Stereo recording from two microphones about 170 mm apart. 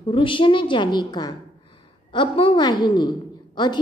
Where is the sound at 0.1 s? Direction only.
30° left (ahead or behind).